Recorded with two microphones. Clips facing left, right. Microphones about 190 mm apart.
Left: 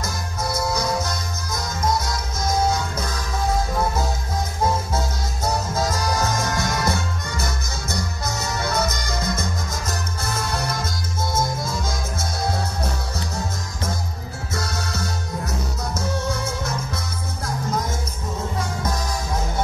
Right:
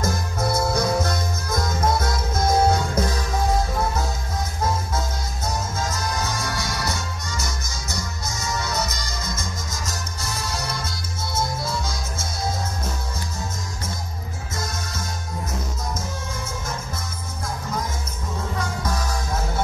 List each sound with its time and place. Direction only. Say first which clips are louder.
0.0 s music: right 4 dB; 55° right (ahead or behind)
5.9 s music: left 4 dB; 45° left (ahead or behind)
14.5 s music: left 3 dB; 70° left (ahead or behind)
15.9 s music: left 6 dB; 70° left (ahead or behind)